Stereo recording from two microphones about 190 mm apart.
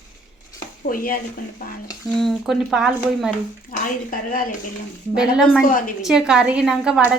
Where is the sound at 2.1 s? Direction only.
Centre (ahead or behind).